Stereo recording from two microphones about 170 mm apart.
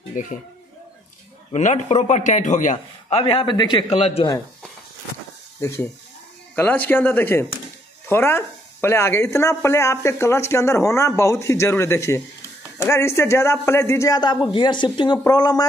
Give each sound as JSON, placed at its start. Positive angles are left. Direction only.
{"t": 0.1, "sound": "speech", "side_deg": 50}
{"t": 1.5, "sound": "a man's voice", "side_deg": 45}
{"t": 3.9, "sound": "speech", "side_deg": 35}
{"t": 6.5, "sound": "a man's voice", "side_deg": 10}